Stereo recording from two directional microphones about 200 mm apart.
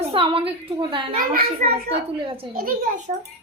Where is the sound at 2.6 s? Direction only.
45° right (ahead or behind).